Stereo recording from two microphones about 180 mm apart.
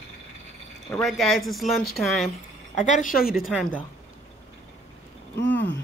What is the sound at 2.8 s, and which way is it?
Speech, 45° left (ahead or behind).